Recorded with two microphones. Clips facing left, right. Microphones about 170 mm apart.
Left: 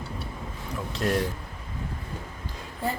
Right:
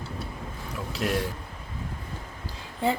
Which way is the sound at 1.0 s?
10° right (ahead or behind).